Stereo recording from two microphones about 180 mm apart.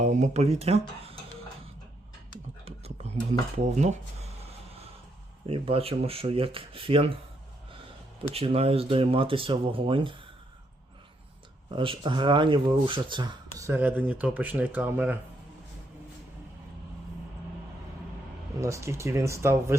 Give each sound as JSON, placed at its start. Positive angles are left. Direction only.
{"t": 0.0, "sound": "speech", "side_deg": -40}
{"t": 2.6, "sound": "whispering", "side_deg": -35}
{"t": 3.6, "sound": "speech", "side_deg": -40}
{"t": 5.5, "sound": "speech", "side_deg": -30}
{"t": 8.3, "sound": "speech", "side_deg": -35}
{"t": 11.7, "sound": "speech", "side_deg": -30}
{"t": 18.6, "sound": "speech", "side_deg": -15}